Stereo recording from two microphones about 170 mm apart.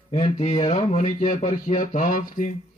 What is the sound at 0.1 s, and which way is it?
Speech, 35° left (ahead or behind).